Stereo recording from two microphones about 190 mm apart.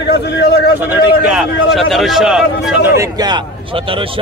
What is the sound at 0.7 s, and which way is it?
A man's voice, 10° right (ahead or behind).